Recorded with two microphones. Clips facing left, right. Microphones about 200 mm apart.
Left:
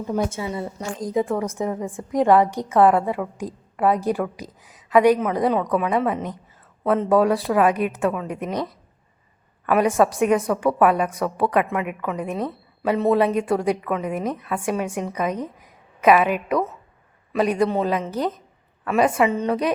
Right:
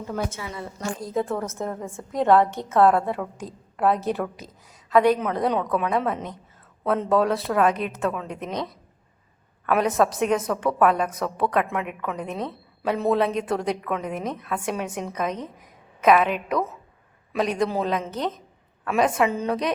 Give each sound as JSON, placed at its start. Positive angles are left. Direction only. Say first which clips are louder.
{"t": 0.3, "sound": "a woman's voice", "louder": "left 6 dB", "side_deg": 25}
{"t": 5.2, "sound": "a woman's voice", "louder": "left 3 dB", "side_deg": 5}
{"t": 9.6, "sound": "a woman's voice", "louder": "left 3 dB", "side_deg": 5}